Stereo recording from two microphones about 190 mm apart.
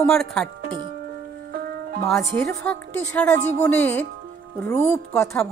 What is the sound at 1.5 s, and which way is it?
Music, 50° right (ahead or behind).